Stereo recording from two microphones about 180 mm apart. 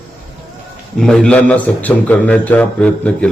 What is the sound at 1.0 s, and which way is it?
A man's voice, 5° left (ahead or behind).